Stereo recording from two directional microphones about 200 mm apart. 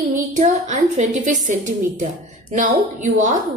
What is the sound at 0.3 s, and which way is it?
A woman's voice, 35° right (ahead or behind).